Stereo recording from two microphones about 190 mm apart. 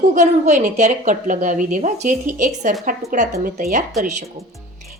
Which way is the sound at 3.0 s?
Centre (ahead or behind).